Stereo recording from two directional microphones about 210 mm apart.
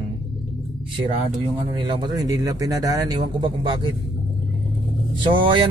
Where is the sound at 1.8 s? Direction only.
20° right (ahead or behind).